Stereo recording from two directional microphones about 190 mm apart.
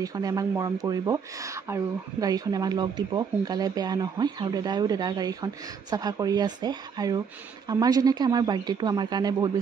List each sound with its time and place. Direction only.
0.0 s speech: 20° right (ahead or behind)